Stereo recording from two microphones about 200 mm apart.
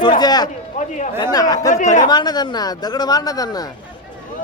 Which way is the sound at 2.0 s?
20° left (ahead or behind).